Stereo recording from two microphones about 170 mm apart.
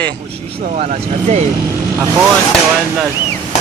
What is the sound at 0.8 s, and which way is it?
Speech, 45° right (ahead or behind).